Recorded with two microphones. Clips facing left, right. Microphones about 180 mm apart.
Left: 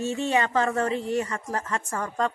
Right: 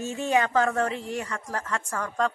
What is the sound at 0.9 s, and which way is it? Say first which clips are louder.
Speech: left 5 dB; 40° left (ahead or behind).